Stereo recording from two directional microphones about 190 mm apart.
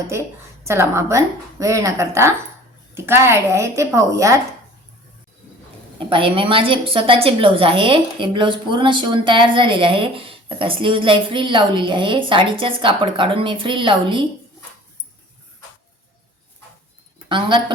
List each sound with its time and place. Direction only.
0.6 s a woman's voice: 15° right (ahead or behind)
6.0 s a woman's voice: 25° right (ahead or behind)
17.2 s a woman's voice: 25° right (ahead or behind)